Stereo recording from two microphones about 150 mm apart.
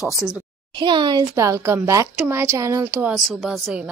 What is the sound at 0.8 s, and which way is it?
A woman's voice, 30° right (ahead or behind).